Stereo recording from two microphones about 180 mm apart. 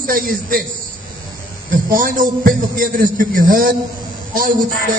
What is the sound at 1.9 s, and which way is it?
A man's voice, 50° right (ahead or behind).